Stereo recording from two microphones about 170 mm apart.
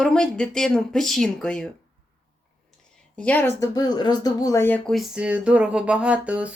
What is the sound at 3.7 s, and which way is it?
Speech, 25° left (ahead or behind).